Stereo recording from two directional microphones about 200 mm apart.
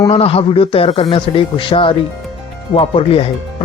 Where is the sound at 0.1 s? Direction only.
30° left (ahead or behind).